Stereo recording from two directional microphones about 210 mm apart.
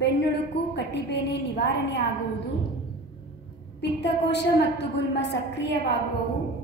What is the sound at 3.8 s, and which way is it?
A woman's voice, 55° left (ahead or behind).